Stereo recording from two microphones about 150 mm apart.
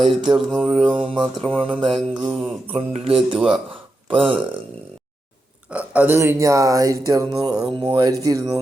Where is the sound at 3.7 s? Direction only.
35° right (ahead or behind).